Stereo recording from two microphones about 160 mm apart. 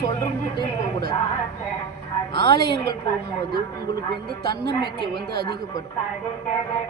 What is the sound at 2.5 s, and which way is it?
Speech, 85° right.